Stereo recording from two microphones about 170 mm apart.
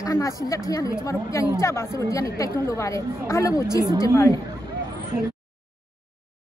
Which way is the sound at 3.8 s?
25° right (ahead or behind).